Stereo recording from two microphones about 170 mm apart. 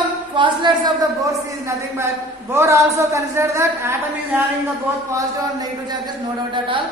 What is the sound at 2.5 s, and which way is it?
A man's voice, 15° right (ahead or behind).